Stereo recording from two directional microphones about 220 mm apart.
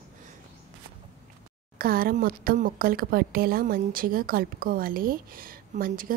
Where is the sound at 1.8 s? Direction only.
40° right (ahead or behind).